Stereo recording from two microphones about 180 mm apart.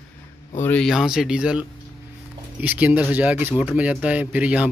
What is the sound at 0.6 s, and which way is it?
Speech, 5° left (ahead or behind).